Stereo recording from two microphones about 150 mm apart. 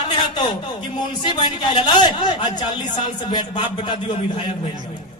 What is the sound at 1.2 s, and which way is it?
Speech, 30° left (ahead or behind).